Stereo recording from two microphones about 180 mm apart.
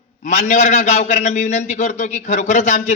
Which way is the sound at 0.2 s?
40° left (ahead or behind).